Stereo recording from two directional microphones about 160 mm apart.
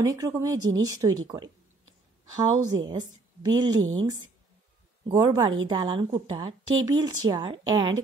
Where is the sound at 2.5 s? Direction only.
25° right (ahead or behind).